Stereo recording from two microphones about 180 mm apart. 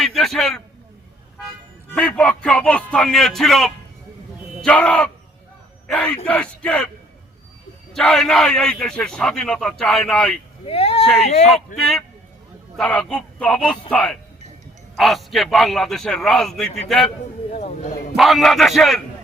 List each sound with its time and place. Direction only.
0.0 s a sound: centre (ahead or behind)
2.0 s a man's voice: 5° left (ahead or behind)
7.9 s a man's voice: centre (ahead or behind)
10.7 s speech: 35° left (ahead or behind)
11.8 s a man's voice: centre (ahead or behind)
17.5 s speech: 40° left (ahead or behind)
18.2 s a man's voice: centre (ahead or behind)